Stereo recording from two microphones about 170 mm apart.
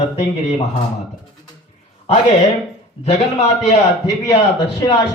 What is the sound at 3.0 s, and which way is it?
Speech, 35° left (ahead or behind).